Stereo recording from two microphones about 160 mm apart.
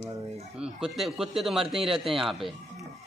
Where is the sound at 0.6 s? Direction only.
Centre (ahead or behind).